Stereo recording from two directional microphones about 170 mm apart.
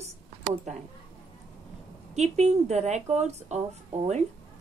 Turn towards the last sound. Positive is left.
turn(degrees=-40)  # may be behind; listen again after turning